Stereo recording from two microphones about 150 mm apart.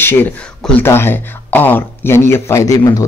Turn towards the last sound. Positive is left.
turn(degrees=20)  # may be behind; listen again after turning